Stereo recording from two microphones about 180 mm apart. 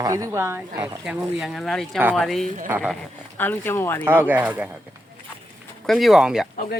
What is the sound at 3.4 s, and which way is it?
Speech, 10° left (ahead or behind).